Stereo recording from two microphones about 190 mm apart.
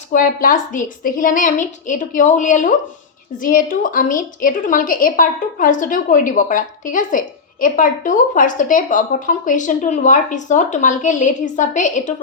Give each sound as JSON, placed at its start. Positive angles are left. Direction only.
{"t": 0.1, "sound": "a woman's voice", "side_deg": 45}